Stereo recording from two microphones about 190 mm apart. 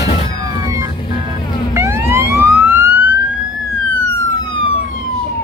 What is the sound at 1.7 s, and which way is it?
Police car, 15° right (ahead or behind).